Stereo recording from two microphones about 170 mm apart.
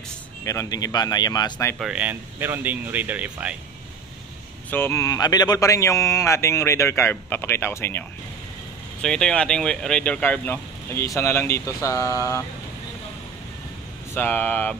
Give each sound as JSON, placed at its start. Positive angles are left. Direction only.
{"t": 0.5, "sound": "speech", "side_deg": 20}
{"t": 1.8, "sound": "speech", "side_deg": -5}
{"t": 4.6, "sound": "a man's voice", "side_deg": 10}
{"t": 9.0, "sound": "a man's voice", "side_deg": 5}
{"t": 14.1, "sound": "a man's voice", "side_deg": 10}